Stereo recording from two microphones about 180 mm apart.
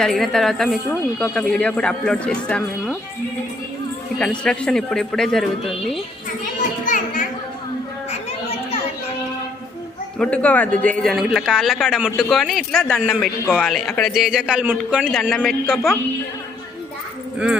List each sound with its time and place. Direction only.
0.0 s speech: centre (ahead or behind)
4.2 s speech: 5° left (ahead or behind)
6.6 s children playing: 45° left (ahead or behind)
10.2 s speech: 5° left (ahead or behind)